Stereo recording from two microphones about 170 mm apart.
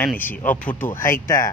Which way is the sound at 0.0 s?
10° left (ahead or behind).